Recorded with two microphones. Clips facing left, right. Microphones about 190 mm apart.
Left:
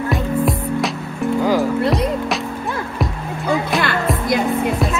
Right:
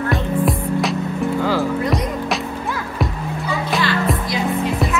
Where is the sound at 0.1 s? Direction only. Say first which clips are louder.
Left 2 dB; centre (ahead or behind).